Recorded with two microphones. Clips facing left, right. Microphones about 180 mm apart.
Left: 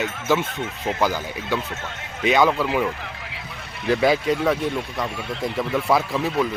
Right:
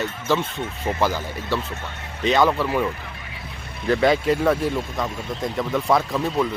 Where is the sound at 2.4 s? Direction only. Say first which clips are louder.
Even; centre (ahead or behind).